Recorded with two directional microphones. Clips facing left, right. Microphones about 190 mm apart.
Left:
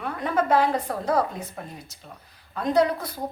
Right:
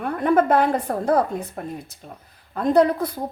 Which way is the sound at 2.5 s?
55° right (ahead or behind).